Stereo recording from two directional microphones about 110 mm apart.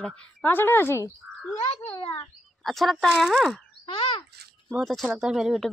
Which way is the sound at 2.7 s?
Centre (ahead or behind).